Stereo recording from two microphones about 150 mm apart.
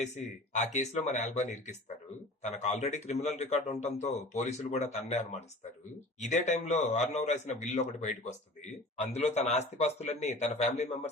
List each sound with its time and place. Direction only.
0.0 s a man's voice: 50° left (ahead or behind)